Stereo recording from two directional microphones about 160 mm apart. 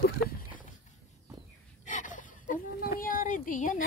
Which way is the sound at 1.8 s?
55° left (ahead or behind).